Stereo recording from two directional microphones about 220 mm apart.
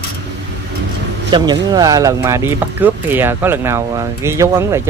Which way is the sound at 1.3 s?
20° right (ahead or behind).